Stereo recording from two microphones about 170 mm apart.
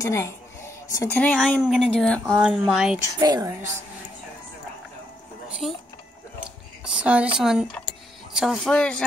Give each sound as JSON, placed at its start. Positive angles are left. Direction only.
{"t": 0.0, "sound": "a woman's voice", "side_deg": 15}
{"t": 3.2, "sound": "a woman's voice", "side_deg": -25}
{"t": 5.6, "sound": "speech", "side_deg": 0}
{"t": 6.8, "sound": "speech", "side_deg": -5}